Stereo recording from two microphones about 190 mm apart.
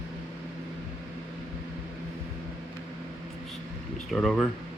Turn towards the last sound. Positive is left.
turn(degrees=0)  # may be behind; listen again after turning